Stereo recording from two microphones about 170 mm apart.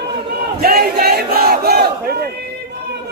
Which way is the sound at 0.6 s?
65° right (ahead or behind).